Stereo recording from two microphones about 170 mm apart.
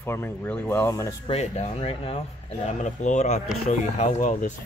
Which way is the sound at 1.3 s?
40° left (ahead or behind).